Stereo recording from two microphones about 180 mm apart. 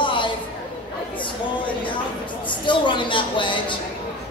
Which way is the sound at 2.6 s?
25° left (ahead or behind).